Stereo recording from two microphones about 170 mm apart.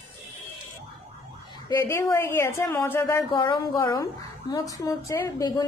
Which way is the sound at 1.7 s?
20° left (ahead or behind).